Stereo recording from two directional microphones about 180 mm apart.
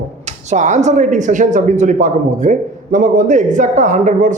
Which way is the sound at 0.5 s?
40° right (ahead or behind).